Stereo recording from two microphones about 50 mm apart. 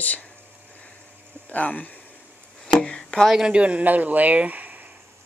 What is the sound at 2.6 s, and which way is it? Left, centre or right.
Chopping, centre.